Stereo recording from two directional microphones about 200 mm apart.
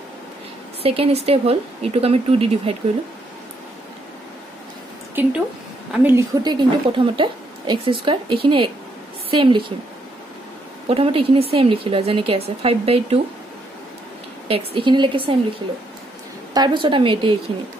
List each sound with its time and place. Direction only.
0.8 s a woman's voice: 30° right (ahead or behind)
5.2 s a woman's voice: 10° right (ahead or behind)
10.9 s a woman's voice: 30° right (ahead or behind)
14.5 s a woman's voice: 25° right (ahead or behind)
16.5 s a woman's voice: 25° right (ahead or behind)